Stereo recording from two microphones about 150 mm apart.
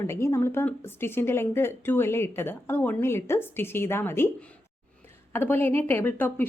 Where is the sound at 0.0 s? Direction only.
20° left (ahead or behind).